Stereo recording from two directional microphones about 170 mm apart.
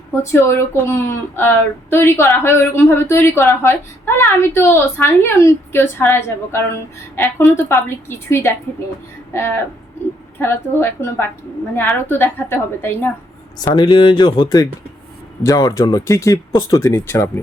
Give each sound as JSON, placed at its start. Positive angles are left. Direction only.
{"t": 0.2, "sound": "speech", "side_deg": 15}
{"t": 10.3, "sound": "speech", "side_deg": 15}
{"t": 13.7, "sound": "speech", "side_deg": 25}